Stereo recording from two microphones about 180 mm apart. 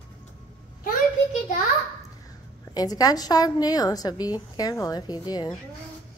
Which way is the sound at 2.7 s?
20° left (ahead or behind).